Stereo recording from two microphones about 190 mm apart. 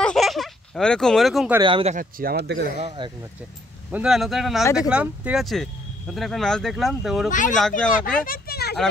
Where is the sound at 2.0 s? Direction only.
50° right (ahead or behind).